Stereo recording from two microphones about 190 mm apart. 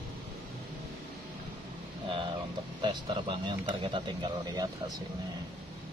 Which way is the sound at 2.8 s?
25° right (ahead or behind).